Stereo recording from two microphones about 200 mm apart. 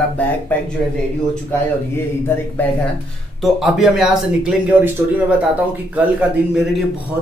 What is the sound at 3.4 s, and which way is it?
A man's voice, centre (ahead or behind).